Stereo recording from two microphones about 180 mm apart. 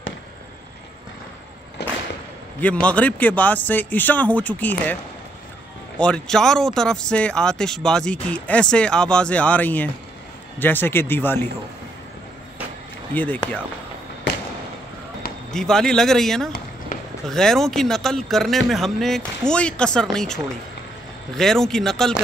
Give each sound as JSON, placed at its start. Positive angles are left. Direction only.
{"t": 1.8, "sound": "whip", "side_deg": 70}
{"t": 2.6, "sound": "a man's voice", "side_deg": 5}
{"t": 5.9, "sound": "a man's voice", "side_deg": 5}
{"t": 13.1, "sound": "a man's voice", "side_deg": 10}
{"t": 15.5, "sound": "speech", "side_deg": 5}
{"t": 21.4, "sound": "speech", "side_deg": 0}